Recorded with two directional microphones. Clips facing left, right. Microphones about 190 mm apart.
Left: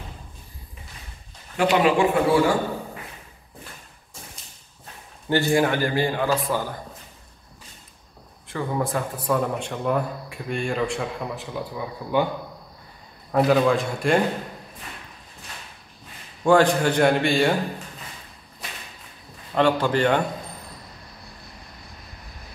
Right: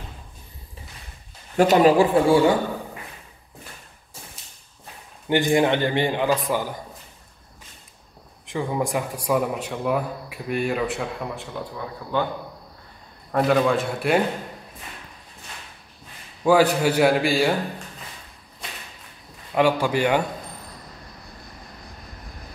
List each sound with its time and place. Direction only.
1.6 s speech: 40° right (ahead or behind)
5.3 s a man's voice: 20° right (ahead or behind)
8.5 s a man's voice: 15° right (ahead or behind); by 12.3 s 10° left (ahead or behind)
13.3 s a man's voice: centre (ahead or behind)
16.4 s a man's voice: 5° right (ahead or behind)
19.5 s a man's voice: 10° right (ahead or behind)